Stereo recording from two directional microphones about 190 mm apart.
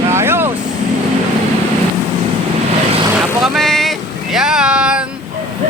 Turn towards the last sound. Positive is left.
turn(degrees=-5)  # may be behind; listen again after turning